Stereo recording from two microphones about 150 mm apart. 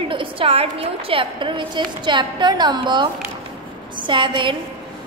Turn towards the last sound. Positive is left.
turn(degrees=-30)  # may be behind; listen again after turning